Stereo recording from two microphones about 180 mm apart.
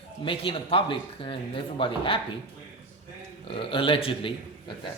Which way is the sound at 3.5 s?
30° left (ahead or behind).